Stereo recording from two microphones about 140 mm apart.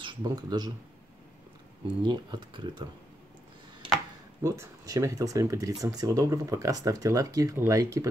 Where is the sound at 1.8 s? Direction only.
35° right (ahead or behind).